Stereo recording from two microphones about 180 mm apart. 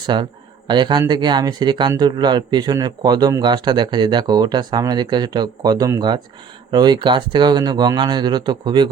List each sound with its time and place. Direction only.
0.0 s speech: 25° right (ahead or behind)